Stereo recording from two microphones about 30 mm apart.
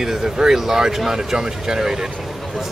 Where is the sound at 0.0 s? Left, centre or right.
Centre.